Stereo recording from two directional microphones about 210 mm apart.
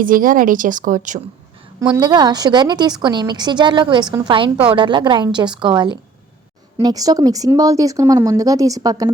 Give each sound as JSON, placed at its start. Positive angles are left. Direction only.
{"t": 0.0, "sound": "speech", "side_deg": -40}
{"t": 2.0, "sound": "a woman's voice", "side_deg": -20}